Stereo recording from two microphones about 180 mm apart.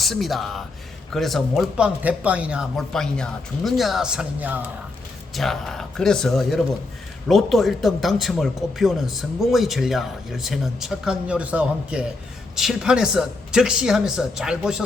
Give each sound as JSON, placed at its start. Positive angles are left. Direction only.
{"t": 0.0, "sound": "speech", "side_deg": 0}